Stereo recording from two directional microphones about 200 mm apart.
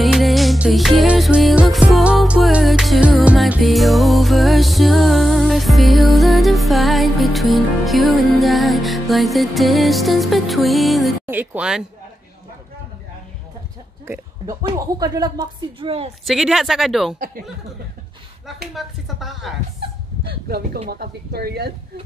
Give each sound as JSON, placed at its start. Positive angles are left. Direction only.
{"t": 0.0, "sound": "music", "side_deg": 0}
{"t": 11.2, "sound": "a woman's voice", "side_deg": -10}
{"t": 14.0, "sound": "speech", "side_deg": -15}
{"t": 16.3, "sound": "speech", "side_deg": 0}
{"t": 18.8, "sound": "speech", "side_deg": 0}
{"t": 20.4, "sound": "speech", "side_deg": -50}